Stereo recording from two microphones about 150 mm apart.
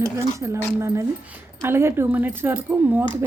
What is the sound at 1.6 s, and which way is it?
Speech, 15° right (ahead or behind).